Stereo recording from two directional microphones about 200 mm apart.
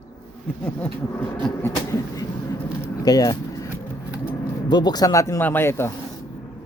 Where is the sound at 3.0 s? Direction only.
20° left (ahead or behind).